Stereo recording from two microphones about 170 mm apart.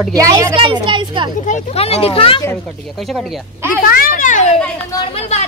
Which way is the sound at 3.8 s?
60° left (ahead or behind).